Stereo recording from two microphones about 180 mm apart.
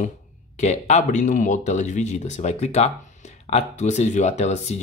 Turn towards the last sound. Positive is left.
turn(degrees=40)  # may be behind; listen again after turning